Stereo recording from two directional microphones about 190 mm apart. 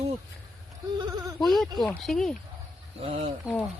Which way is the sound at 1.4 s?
Centre (ahead or behind).